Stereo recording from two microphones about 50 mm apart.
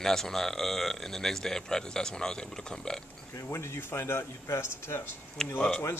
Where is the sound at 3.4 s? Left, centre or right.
Left.